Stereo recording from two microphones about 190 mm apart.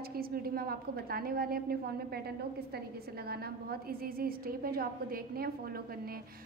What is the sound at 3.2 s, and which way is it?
A woman's voice, 55° right (ahead or behind).